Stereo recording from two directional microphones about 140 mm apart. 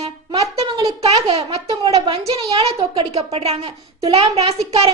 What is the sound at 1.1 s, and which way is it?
A woman's voice, 45° right (ahead or behind).